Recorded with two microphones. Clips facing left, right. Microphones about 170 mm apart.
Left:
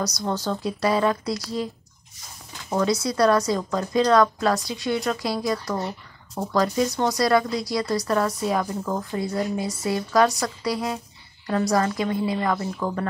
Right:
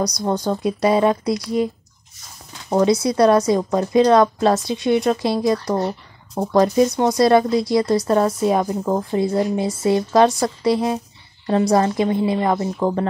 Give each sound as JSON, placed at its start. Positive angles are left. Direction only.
{"t": 0.2, "sound": "speech", "side_deg": -20}
{"t": 2.8, "sound": "speech", "side_deg": -20}